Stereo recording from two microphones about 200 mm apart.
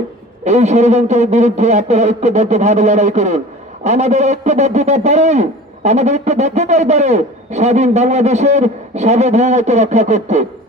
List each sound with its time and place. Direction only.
0.4 s a man's voice: 35° right (ahead or behind)